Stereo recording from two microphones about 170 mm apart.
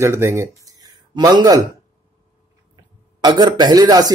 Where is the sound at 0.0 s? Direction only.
15° right (ahead or behind).